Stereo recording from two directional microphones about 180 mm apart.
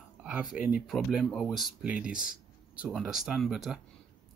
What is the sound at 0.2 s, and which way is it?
Speech, 5° right (ahead or behind).